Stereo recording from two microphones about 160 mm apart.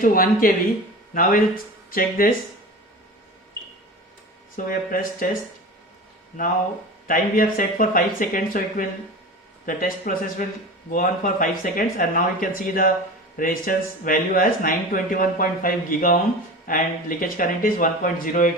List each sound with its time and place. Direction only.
0.0 s speech: 60° left (ahead or behind)
4.5 s speech: 60° left (ahead or behind)
7.1 s speech: 60° left (ahead or behind)